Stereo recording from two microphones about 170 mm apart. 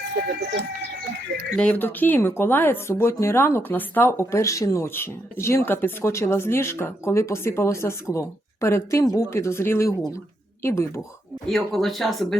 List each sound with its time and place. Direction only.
1.5 s speech: 10° left (ahead or behind)
11.4 s speech: centre (ahead or behind)